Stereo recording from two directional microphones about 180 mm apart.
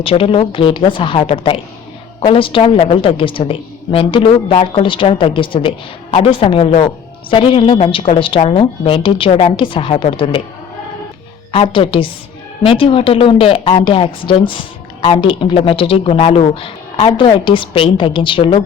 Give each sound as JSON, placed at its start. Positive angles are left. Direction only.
{"t": 0.0, "sound": "a woman's voice", "side_deg": 30}
{"t": 11.5, "sound": "a woman's voice", "side_deg": 30}